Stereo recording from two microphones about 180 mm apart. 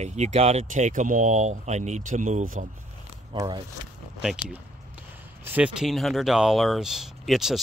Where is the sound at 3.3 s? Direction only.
20° right (ahead or behind).